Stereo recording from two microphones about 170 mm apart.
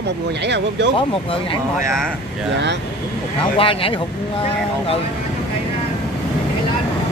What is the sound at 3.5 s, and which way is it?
Speech, 30° left (ahead or behind).